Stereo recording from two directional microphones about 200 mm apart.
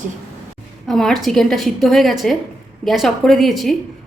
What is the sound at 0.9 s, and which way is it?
A woman's voice, centre (ahead or behind).